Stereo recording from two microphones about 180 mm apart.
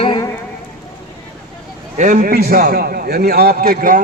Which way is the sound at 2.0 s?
45° right (ahead or behind).